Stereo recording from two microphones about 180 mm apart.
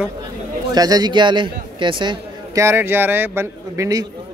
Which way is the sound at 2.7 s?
10° right (ahead or behind).